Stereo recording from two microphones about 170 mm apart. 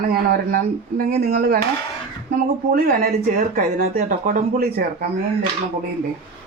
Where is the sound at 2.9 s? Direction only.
60° right (ahead or behind).